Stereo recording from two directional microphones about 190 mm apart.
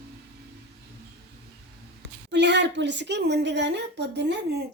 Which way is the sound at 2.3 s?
65° right (ahead or behind).